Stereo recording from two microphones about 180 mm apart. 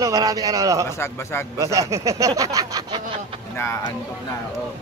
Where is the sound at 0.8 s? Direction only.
15° left (ahead or behind).